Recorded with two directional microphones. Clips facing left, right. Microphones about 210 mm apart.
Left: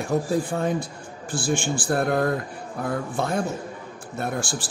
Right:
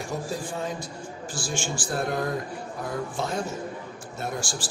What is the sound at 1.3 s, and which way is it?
A man's voice, 60° left (ahead or behind).